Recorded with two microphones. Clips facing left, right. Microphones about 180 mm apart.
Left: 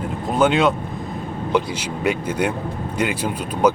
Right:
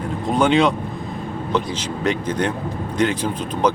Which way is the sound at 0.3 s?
5° left (ahead or behind).